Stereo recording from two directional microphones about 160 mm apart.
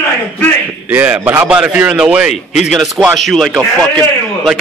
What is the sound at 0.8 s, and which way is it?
A man's voice, 10° right (ahead or behind).